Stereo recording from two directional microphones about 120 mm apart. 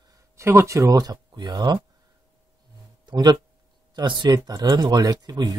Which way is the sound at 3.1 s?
35° right (ahead or behind).